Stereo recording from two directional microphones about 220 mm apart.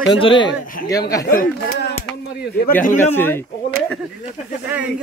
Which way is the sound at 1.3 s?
40° left (ahead or behind).